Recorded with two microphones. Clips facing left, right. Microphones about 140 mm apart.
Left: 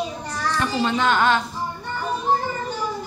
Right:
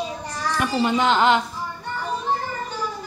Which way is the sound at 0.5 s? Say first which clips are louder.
Right 2 dB; 15° right (ahead or behind).